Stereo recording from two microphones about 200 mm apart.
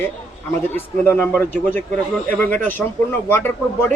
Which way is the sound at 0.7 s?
10° left (ahead or behind).